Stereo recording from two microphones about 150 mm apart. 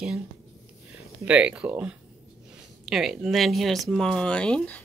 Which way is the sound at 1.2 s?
10° right (ahead or behind).